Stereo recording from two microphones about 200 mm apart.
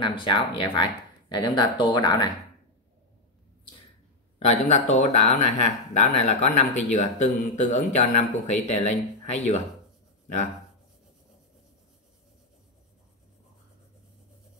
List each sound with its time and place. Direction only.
0.0 s speech: 25° left (ahead or behind)
4.5 s speech: 35° left (ahead or behind)